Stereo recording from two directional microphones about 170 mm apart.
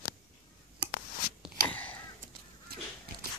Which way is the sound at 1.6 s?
10° left (ahead or behind).